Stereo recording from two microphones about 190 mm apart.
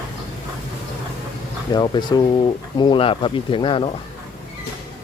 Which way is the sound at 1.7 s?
20° left (ahead or behind).